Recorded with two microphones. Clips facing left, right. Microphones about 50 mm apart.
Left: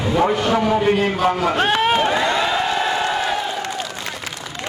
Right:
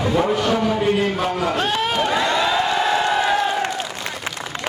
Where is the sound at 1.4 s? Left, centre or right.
Left.